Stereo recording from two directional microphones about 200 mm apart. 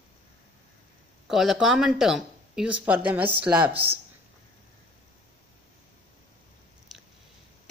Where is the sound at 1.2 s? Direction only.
Centre (ahead or behind).